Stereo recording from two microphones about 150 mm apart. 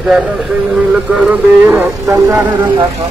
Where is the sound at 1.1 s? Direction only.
10° right (ahead or behind).